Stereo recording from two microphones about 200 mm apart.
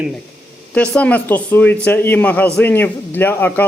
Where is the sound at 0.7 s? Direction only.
5° left (ahead or behind).